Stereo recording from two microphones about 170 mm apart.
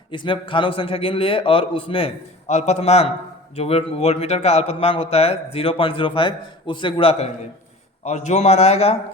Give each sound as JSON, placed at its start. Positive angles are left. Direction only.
{"t": 0.1, "sound": "a man's voice", "side_deg": 30}